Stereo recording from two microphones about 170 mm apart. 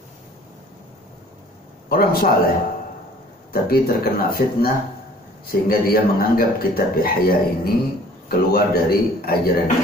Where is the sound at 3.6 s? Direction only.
60° left (ahead or behind).